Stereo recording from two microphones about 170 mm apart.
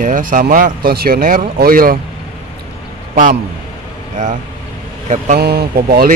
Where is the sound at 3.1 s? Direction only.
50° right (ahead or behind).